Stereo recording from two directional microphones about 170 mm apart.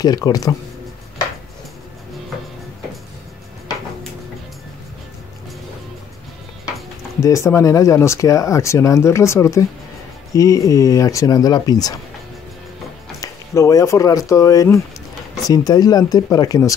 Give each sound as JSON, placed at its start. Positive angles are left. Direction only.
{"t": 0.0, "sound": "speech", "side_deg": 20}
{"t": 7.2, "sound": "speech", "side_deg": 20}
{"t": 13.2, "sound": "speech", "side_deg": 20}